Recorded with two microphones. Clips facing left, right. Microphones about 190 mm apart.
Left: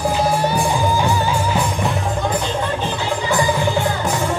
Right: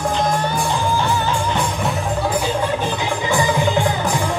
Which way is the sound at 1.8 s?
5° right (ahead or behind).